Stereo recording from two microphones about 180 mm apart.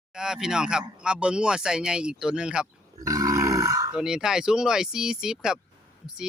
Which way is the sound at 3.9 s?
5° right (ahead or behind).